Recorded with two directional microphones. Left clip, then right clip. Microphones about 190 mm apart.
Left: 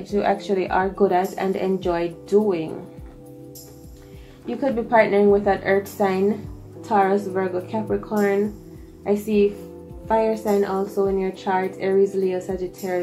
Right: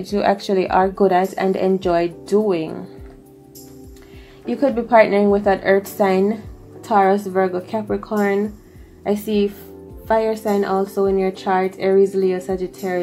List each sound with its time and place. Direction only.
0.0 s speech: 50° right (ahead or behind)
4.5 s speech: 45° right (ahead or behind)
8.3 s speech: centre (ahead or behind)
9.0 s speech: 45° right (ahead or behind)